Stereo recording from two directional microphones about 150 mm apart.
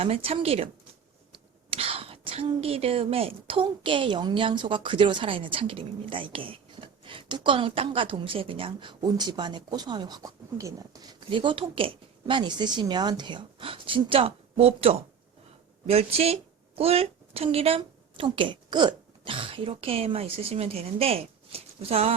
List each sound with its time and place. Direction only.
0.0 s a woman's voice: 40° right (ahead or behind)
1.7 s a woman's voice: 40° right (ahead or behind)